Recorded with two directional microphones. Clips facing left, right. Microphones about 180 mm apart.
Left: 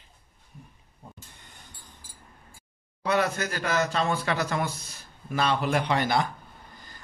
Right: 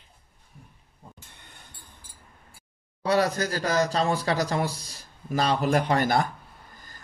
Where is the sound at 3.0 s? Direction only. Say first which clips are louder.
Right 2 dB; 35° right (ahead or behind).